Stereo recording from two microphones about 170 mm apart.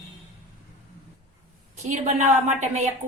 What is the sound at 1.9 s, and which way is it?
A woman's voice, 40° right (ahead or behind).